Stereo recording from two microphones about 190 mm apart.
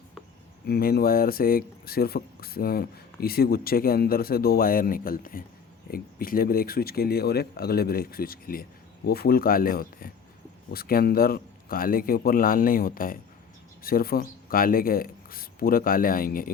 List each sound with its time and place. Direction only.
0.7 s speech: 55° left (ahead or behind)